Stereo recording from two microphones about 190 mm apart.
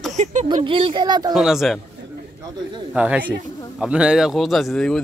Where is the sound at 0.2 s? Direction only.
40° right (ahead or behind).